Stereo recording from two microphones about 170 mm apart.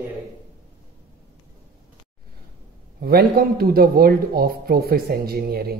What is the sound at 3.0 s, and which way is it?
Speech, 65° right (ahead or behind).